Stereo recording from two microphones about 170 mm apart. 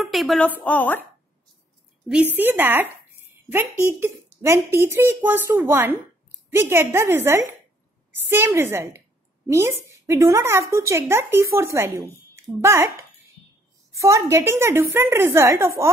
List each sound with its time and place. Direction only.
0.0 s a woman's voice: centre (ahead or behind)
2.0 s a woman's voice: 10° right (ahead or behind)